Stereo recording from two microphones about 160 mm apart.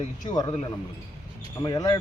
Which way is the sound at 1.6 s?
25° left (ahead or behind).